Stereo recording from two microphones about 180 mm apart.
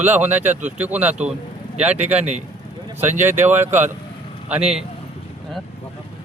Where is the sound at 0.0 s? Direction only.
10° right (ahead or behind).